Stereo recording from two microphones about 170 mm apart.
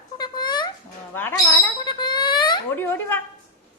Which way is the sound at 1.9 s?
25° left (ahead or behind).